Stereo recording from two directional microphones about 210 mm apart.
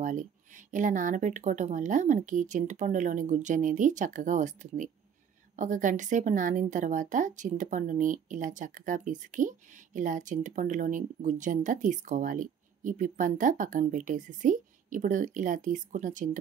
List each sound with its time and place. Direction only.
0.0 s a woman's voice: 35° right (ahead or behind)